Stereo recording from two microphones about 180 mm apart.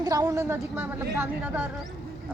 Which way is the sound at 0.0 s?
20° right (ahead or behind).